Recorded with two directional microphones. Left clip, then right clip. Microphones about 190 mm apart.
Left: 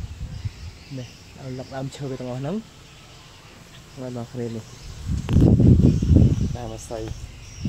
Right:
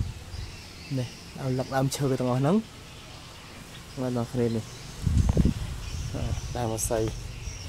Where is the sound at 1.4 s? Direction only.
30° right (ahead or behind).